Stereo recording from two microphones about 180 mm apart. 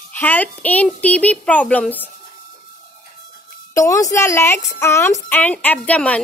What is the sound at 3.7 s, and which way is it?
A woman's voice, 15° left (ahead or behind).